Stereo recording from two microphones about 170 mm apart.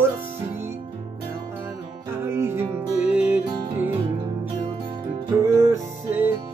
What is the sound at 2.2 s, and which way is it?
Music, 15° right (ahead or behind).